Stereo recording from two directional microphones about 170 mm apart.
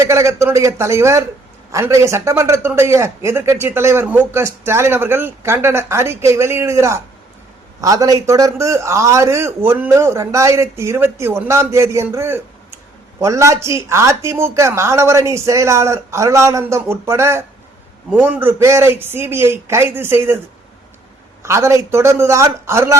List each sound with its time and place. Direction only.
0.0 s a man's voice: 15° right (ahead or behind)
21.4 s a man's voice: 15° right (ahead or behind)